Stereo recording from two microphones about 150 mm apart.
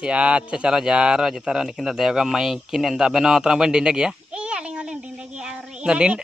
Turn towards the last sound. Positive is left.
turn(degrees=-5)  # may be behind; listen again after turning